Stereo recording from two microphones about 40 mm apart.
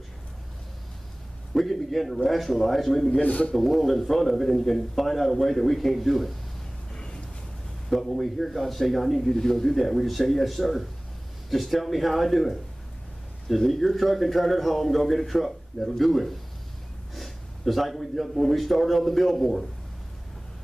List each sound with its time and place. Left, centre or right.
1.5 s a sound: centre
2.2 s a man's voice: centre
3.2 s a man's voice: left
3.5 s a man's voice: centre
6.9 s a sound: left
7.9 s a man's voice: centre
13.6 s a man's voice: centre
17.1 s gasp: centre
18.4 s a man's voice: centre